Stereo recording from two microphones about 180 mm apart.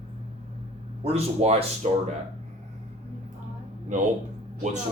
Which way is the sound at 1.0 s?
35° right (ahead or behind).